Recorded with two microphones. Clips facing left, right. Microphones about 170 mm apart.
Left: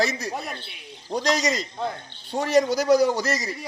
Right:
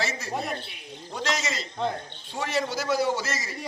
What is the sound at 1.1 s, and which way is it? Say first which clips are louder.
A man's voice: left 7 dB; 35° left (ahead or behind).